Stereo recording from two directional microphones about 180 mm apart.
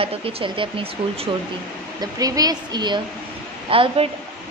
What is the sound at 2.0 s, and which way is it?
Speech, 20° right (ahead or behind).